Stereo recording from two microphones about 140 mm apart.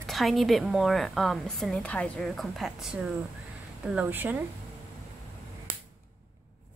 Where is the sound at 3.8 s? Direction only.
10° right (ahead or behind).